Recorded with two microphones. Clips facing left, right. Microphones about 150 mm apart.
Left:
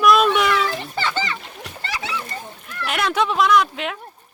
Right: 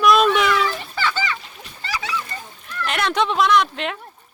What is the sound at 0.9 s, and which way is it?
Splash, 25° left (ahead or behind).